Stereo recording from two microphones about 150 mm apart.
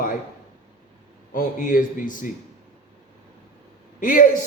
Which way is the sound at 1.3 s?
65° left (ahead or behind).